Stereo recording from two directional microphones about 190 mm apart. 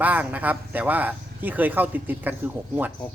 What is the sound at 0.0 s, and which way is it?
Speech, 10° right (ahead or behind).